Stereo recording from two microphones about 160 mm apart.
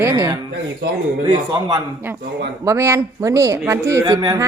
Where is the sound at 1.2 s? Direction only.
25° right (ahead or behind).